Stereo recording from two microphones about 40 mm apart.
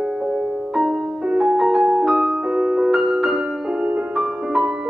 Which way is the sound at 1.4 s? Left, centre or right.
Centre.